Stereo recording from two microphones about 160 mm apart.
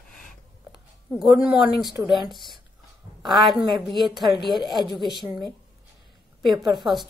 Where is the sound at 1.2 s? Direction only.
Centre (ahead or behind).